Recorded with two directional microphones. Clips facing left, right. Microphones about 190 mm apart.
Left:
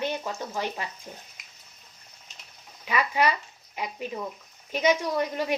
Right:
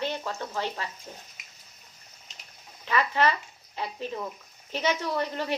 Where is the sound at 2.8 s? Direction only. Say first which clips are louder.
Even; 10° left (ahead or behind).